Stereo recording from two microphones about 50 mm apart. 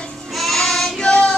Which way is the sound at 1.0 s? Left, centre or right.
Centre.